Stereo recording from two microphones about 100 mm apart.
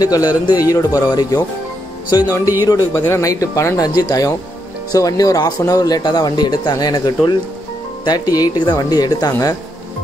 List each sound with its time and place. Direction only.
0.0 s speech: 40° left (ahead or behind)
2.0 s music: 40° left (ahead or behind)
2.6 s speech: 30° left (ahead or behind)